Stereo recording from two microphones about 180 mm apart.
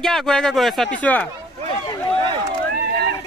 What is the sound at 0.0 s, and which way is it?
Speech, centre (ahead or behind).